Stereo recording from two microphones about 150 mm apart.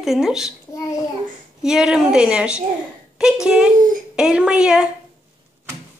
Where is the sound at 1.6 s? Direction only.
5° right (ahead or behind).